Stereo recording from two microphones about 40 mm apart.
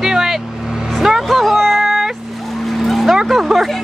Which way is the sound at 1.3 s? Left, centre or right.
Centre.